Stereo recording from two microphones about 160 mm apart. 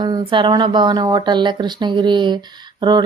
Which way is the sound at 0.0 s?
30° right (ahead or behind).